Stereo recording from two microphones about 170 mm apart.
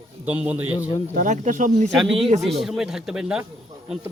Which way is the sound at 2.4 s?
Centre (ahead or behind).